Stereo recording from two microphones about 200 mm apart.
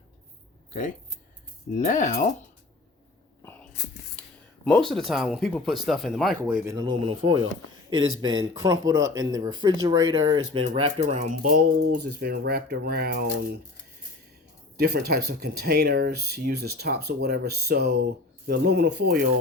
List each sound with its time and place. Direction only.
0.7 s speech: 40° left (ahead or behind)
4.2 s a sound: 5° left (ahead or behind)
4.6 s speech: centre (ahead or behind)
6.4 s speech: 15° right (ahead or behind); by 11.6 s 40° right (ahead or behind)
12.2 s speech: 55° right (ahead or behind)
14.8 s speech: 55° right (ahead or behind)